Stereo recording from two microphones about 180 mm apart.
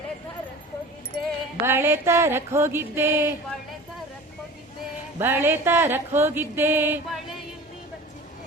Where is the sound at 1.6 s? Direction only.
15° right (ahead or behind).